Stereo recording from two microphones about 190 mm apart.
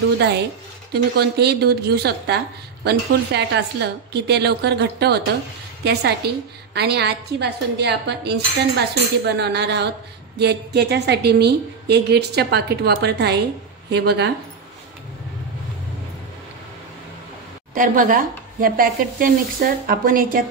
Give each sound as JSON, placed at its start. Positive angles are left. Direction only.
{"t": 0.2, "sound": "speech", "side_deg": -60}
{"t": 17.7, "sound": "speech", "side_deg": -45}